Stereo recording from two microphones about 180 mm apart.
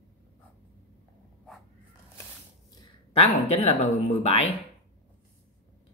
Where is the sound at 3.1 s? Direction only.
35° left (ahead or behind).